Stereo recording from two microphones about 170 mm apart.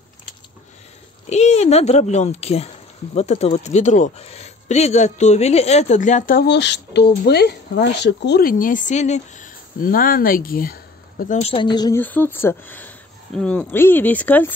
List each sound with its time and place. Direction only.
1.3 s speech: 40° left (ahead or behind)
6.4 s speech: 90° left; by 11.3 s 60° left (ahead or behind)
11.3 s a woman's voice: 35° left (ahead or behind)
12.0 s speech: 10° left (ahead or behind)